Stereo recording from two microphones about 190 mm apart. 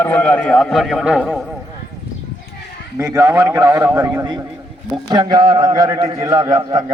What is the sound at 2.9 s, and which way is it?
A man's voice, 15° right (ahead or behind).